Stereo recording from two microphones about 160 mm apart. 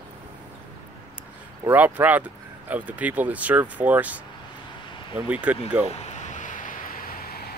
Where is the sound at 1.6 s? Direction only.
10° right (ahead or behind).